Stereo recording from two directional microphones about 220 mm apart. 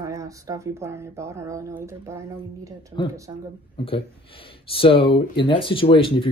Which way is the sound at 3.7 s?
25° left (ahead or behind).